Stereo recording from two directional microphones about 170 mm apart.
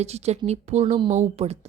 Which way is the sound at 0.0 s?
40° right (ahead or behind).